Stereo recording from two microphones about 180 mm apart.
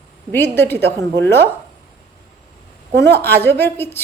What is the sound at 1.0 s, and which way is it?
Speech, 75° right (ahead or behind).